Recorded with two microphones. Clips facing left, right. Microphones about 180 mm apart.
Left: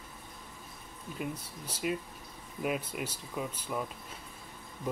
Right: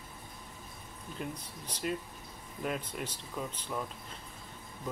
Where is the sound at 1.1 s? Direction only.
5° left (ahead or behind).